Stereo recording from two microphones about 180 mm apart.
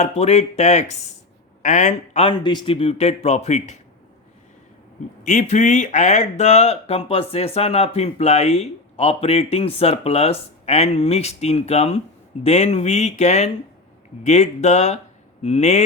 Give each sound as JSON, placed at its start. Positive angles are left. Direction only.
{"t": 0.0, "sound": "a woman's voice", "side_deg": 35}
{"t": 5.2, "sound": "speech", "side_deg": 40}